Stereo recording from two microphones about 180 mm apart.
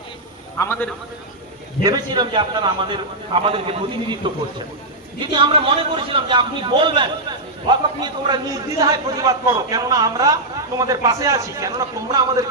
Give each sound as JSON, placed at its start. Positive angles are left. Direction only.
{"t": 0.6, "sound": "a man's voice", "side_deg": 15}
{"t": 1.8, "sound": "a man's voice", "side_deg": -20}
{"t": 5.2, "sound": "a man's voice", "side_deg": -30}